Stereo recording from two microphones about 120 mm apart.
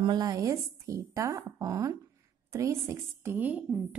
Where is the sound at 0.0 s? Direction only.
35° right (ahead or behind).